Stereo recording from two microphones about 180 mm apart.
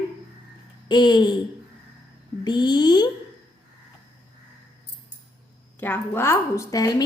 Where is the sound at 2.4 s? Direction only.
25° left (ahead or behind).